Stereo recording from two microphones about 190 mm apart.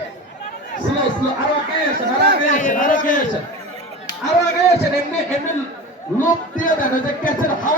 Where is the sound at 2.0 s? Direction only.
55° right (ahead or behind).